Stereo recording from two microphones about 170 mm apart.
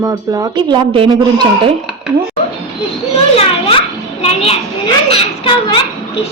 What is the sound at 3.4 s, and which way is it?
A child's voice, 35° left (ahead or behind).